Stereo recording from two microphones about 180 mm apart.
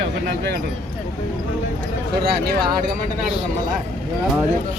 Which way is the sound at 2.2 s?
55° right (ahead or behind).